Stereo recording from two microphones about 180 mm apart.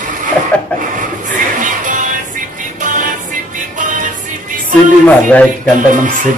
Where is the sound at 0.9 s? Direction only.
45° right (ahead or behind).